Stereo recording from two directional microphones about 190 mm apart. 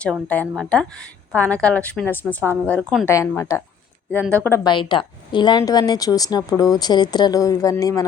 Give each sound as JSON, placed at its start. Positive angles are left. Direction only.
{"t": 0.0, "sound": "a woman's voice", "side_deg": 5}
{"t": 3.1, "sound": "a woman's voice", "side_deg": 15}
{"t": 4.2, "sound": "speech", "side_deg": -15}
{"t": 4.4, "sound": "a woman's voice", "side_deg": 15}
{"t": 4.7, "sound": "a woman's voice", "side_deg": 25}